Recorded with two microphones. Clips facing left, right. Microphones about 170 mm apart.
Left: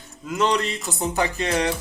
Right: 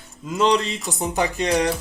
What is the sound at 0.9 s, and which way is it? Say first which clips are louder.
Speech: right 2 dB; 15° right (ahead or behind).